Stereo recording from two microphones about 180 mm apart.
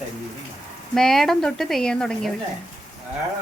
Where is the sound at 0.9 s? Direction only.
Centre (ahead or behind).